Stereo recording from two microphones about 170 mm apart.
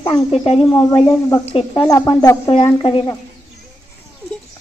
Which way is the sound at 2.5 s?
30° left (ahead or behind).